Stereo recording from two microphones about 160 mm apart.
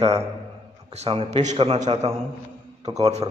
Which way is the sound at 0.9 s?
40° right (ahead or behind).